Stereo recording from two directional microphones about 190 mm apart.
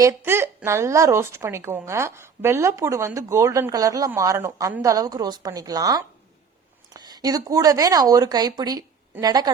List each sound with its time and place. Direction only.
0.0 s speech: 15° right (ahead or behind)